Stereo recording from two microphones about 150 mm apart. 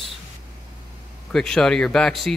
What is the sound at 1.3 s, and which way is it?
Speech, 5° left (ahead or behind).